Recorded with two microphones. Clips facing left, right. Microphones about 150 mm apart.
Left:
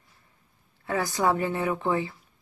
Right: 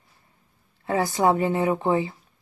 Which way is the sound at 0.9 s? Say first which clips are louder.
Right 4 dB; 20° right (ahead or behind).